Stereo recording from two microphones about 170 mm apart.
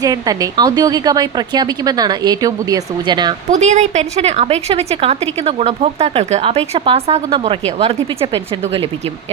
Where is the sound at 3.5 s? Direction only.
45° right (ahead or behind).